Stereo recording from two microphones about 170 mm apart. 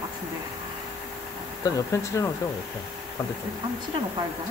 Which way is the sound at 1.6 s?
20° left (ahead or behind).